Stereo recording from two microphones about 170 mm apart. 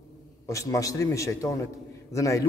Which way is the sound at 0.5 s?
20° left (ahead or behind).